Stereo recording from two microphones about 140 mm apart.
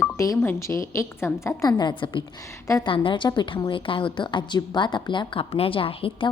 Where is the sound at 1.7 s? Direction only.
35° left (ahead or behind).